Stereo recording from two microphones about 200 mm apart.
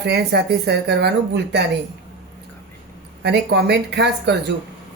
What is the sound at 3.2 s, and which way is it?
Speech, 55° right (ahead or behind).